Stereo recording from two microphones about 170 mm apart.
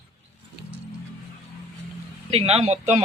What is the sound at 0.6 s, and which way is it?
Music, 70° right (ahead or behind).